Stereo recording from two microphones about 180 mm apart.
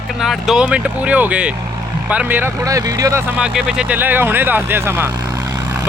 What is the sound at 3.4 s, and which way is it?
Speech, 5° right (ahead or behind).